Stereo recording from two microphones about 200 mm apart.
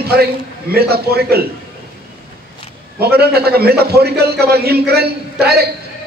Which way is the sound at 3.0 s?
50° right (ahead or behind).